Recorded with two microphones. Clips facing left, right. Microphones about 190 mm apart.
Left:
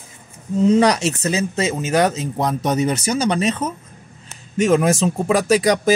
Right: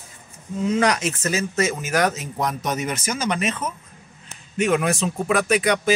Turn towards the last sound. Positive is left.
turn(degrees=35)  # may be behind; listen again after turning